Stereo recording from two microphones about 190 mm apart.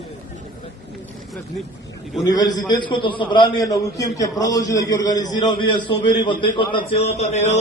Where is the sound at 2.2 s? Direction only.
20° left (ahead or behind).